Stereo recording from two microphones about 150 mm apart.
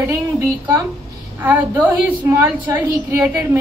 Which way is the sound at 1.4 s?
10° right (ahead or behind).